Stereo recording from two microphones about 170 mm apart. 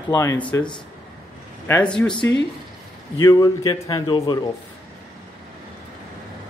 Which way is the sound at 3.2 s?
20° left (ahead or behind).